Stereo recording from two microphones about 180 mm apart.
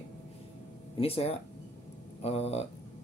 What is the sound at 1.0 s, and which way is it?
A man's voice, 35° left (ahead or behind).